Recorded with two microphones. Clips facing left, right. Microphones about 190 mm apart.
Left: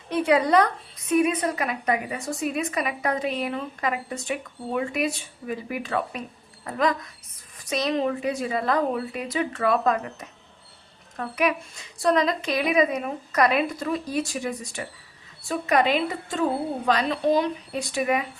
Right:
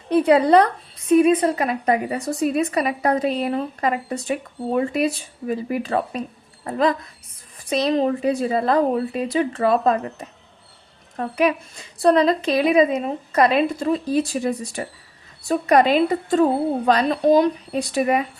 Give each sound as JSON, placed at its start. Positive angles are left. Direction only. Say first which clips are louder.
{"t": 0.1, "sound": "a woman's voice", "louder": "right 6 dB", "side_deg": -35}